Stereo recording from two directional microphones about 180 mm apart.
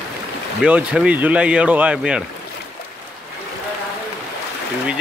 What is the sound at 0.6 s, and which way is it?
Speech, 5° right (ahead or behind).